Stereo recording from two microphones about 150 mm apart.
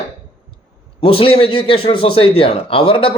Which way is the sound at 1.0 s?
35° left (ahead or behind).